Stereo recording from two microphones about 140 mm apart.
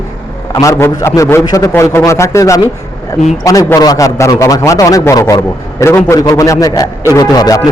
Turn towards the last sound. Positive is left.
turn(degrees=25)  # may be behind; listen again after turning